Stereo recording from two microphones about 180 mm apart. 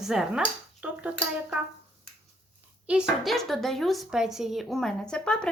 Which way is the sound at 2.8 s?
5° right (ahead or behind).